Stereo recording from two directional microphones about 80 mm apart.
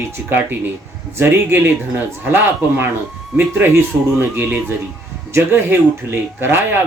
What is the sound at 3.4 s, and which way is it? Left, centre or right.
Speech, right.